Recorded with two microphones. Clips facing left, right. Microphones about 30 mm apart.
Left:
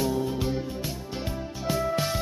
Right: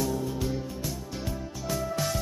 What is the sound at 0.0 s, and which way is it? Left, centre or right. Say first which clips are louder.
Music: left 3 dB; left.